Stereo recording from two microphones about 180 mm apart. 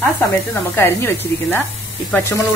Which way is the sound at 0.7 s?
10° left (ahead or behind).